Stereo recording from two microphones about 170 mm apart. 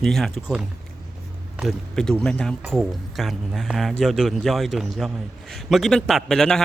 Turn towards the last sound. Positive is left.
turn(degrees=5)  # may be behind; listen again after turning